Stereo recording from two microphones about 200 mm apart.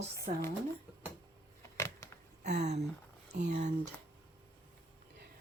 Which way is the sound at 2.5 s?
55° right (ahead or behind).